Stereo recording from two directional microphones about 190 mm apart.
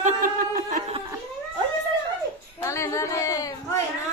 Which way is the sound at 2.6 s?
15° left (ahead or behind).